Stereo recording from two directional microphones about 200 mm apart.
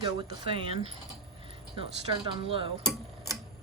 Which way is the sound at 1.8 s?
25° right (ahead or behind).